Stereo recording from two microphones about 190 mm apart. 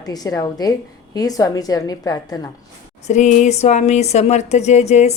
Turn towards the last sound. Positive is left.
turn(degrees=35)  # may be behind; listen again after turning